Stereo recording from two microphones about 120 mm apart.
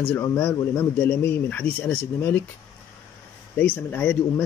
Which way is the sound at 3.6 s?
15° left (ahead or behind).